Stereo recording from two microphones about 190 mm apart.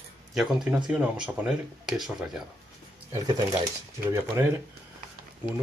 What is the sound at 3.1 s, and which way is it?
Speech, 20° right (ahead or behind).